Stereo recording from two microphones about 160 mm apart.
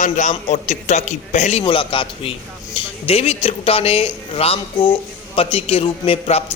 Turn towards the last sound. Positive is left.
turn(degrees=40)  # may be behind; listen again after turning